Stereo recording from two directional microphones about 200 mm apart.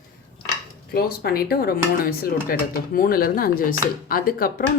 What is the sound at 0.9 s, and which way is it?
Speech, 50° left (ahead or behind).